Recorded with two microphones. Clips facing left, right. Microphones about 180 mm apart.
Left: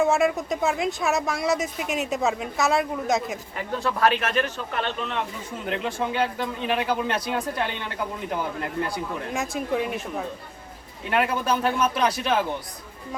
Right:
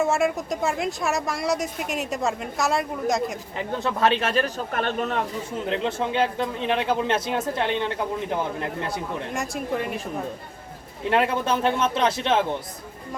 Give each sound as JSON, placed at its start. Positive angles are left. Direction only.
{"t": 0.0, "sound": "a woman's voice", "side_deg": 0}
{"t": 3.8, "sound": "speech", "side_deg": -25}
{"t": 4.7, "sound": "speech", "side_deg": -45}
{"t": 5.6, "sound": "speech", "side_deg": -25}
{"t": 9.3, "sound": "a woman's voice", "side_deg": 0}
{"t": 11.1, "sound": "speech", "side_deg": -25}